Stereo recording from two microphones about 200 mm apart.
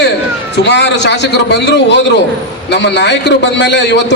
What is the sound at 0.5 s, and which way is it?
A man's voice, 60° left (ahead or behind).